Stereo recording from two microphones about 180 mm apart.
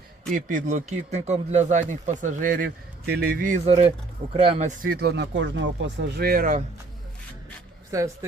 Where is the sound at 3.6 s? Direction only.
35° right (ahead or behind); by 6.6 s 55° right (ahead or behind).